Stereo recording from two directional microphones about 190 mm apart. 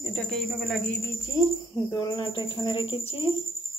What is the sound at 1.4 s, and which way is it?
Speech, 20° left (ahead or behind).